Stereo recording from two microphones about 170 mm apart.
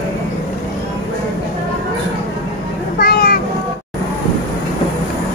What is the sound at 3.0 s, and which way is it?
Vehicle, 65° left (ahead or behind).